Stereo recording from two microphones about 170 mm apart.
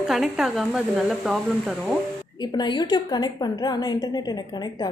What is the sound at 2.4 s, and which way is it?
A woman's voice, 25° left (ahead or behind).